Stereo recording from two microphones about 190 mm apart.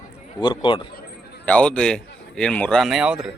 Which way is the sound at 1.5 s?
5° left (ahead or behind).